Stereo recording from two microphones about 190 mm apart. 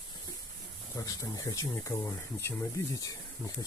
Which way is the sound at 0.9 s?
20° left (ahead or behind).